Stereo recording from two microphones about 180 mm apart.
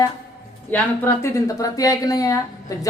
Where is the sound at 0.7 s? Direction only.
15° left (ahead or behind).